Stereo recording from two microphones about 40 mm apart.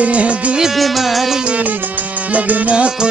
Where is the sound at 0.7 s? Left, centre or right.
Centre.